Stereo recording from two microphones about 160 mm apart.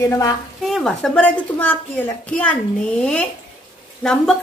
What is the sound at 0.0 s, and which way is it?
Speech, 20° left (ahead or behind).